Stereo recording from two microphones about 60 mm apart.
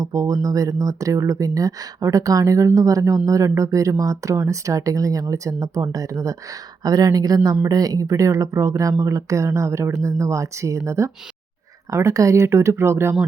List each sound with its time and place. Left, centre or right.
0.0 s speech: right
6.8 s speech: right